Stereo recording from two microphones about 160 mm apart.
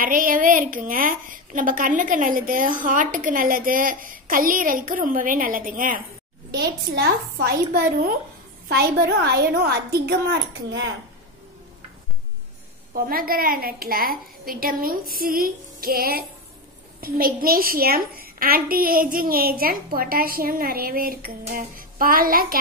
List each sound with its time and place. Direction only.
0.0 s a woman's voice: 60° right (ahead or behind)
6.5 s a woman's voice: 90° right; by 8.2 s 65° right (ahead or behind)
8.6 s a woman's voice: 85° right
12.9 s a woman's voice: 65° right (ahead or behind)